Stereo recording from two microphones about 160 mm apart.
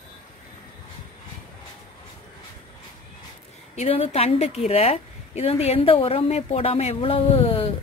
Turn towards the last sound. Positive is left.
turn(degrees=35)  # may be behind; listen again after turning